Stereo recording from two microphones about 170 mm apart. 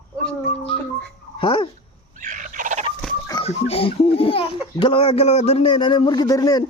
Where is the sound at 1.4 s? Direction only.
30° left (ahead or behind).